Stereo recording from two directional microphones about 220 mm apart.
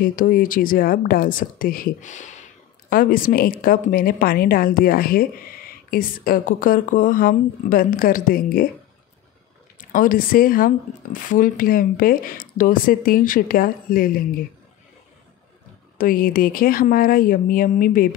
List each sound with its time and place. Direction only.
0.0 s speech: 40° left (ahead or behind)
9.9 s speech: 40° left (ahead or behind)
16.0 s speech: 40° left (ahead or behind)